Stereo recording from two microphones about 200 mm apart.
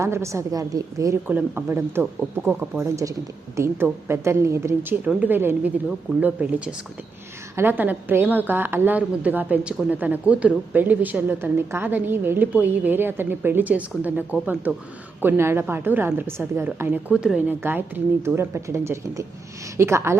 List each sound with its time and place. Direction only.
0.0 s a woman's voice: 15° right (ahead or behind)